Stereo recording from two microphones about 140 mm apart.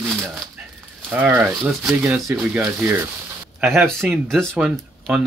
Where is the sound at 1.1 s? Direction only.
15° right (ahead or behind).